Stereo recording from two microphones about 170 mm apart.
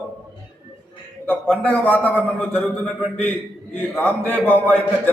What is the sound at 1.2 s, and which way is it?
A man's voice, 10° left (ahead or behind).